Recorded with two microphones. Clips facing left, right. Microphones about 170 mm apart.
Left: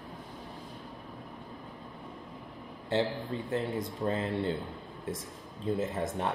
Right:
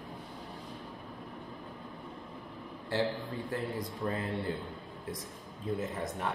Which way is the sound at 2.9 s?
25° left (ahead or behind).